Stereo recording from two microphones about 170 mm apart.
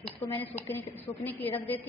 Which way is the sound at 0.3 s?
10° left (ahead or behind).